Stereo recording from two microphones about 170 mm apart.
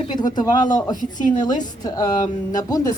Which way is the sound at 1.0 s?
50° left (ahead or behind).